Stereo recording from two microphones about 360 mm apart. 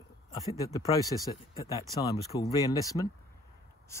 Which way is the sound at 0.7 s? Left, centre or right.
Centre.